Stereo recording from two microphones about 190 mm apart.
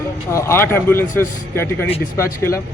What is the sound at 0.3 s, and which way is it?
Speech, 15° left (ahead or behind).